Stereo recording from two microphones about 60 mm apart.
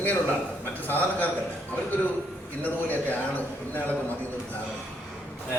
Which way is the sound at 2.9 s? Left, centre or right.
Left.